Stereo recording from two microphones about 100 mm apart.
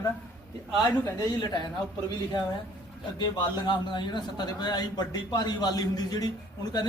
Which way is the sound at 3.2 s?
50° left (ahead or behind).